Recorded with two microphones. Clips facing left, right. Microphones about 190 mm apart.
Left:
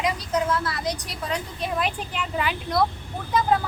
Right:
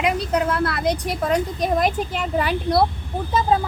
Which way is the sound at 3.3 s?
25° right (ahead or behind).